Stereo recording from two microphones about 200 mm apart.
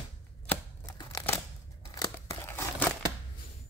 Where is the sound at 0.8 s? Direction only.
15° left (ahead or behind).